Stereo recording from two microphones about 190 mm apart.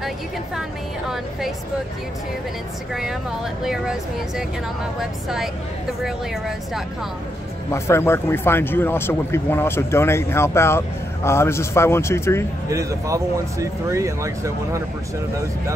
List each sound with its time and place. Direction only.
0.6 s a sound: centre (ahead or behind)
2.9 s speech: centre (ahead or behind)
7.7 s speech: 15° left (ahead or behind)
12.6 s speech: 15° right (ahead or behind)